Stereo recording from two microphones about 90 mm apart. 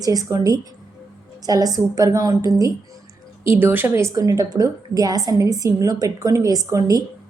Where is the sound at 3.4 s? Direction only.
25° right (ahead or behind).